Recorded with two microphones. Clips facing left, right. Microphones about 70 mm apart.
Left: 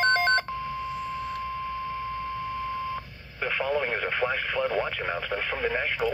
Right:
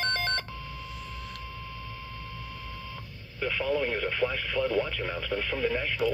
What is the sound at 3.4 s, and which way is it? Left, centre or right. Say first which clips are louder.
Speech: left 1 dB; left.